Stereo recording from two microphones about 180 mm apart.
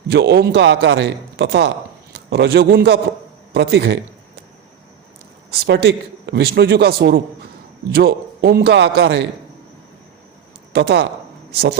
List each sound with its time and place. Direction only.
0.1 s a man's voice: 70° right (ahead or behind)
3.5 s a sound: 65° right (ahead or behind)
5.5 s a man's voice: 65° right (ahead or behind)
10.7 s speech: 70° right (ahead or behind)